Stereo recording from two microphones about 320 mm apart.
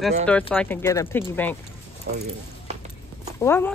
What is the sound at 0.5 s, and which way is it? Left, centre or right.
Speech, centre.